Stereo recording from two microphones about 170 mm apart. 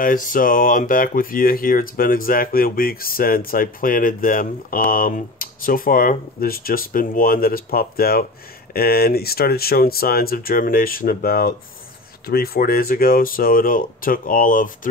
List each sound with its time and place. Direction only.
0.0 s speech: 55° left (ahead or behind)